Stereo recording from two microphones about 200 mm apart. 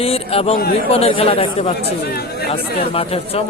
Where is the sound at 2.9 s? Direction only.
30° left (ahead or behind).